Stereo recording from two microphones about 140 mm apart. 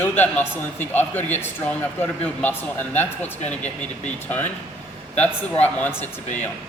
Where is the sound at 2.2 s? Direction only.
10° left (ahead or behind).